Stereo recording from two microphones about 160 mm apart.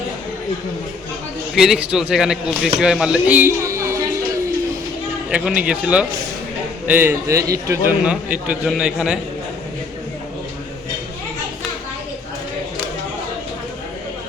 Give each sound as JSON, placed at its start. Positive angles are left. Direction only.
{"t": 1.5, "sound": "a man's voice", "side_deg": -5}
{"t": 5.3, "sound": "a man's voice", "side_deg": -5}
{"t": 8.0, "sound": "a man's voice", "side_deg": -5}